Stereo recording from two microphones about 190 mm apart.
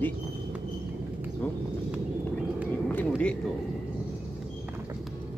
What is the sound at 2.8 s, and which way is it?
Vehicle, 5° left (ahead or behind).